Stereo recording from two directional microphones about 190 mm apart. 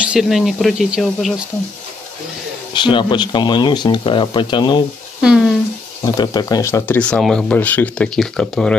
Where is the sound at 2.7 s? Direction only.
25° left (ahead or behind).